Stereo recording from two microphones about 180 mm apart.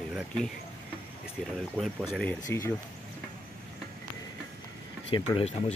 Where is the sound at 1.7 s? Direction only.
Centre (ahead or behind).